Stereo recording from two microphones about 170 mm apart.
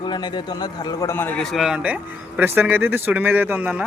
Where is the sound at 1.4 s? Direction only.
Centre (ahead or behind).